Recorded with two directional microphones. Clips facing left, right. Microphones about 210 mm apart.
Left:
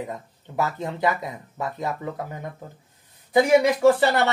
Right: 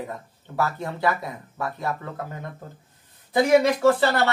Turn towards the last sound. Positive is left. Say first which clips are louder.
# left 2 dB
turn(degrees=15)  # may be behind; listen again after turning